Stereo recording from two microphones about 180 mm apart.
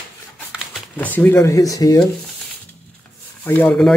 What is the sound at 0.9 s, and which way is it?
Speech, 10° left (ahead or behind).